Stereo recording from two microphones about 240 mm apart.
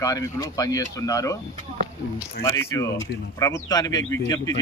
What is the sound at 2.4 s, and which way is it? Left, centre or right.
Speech, centre.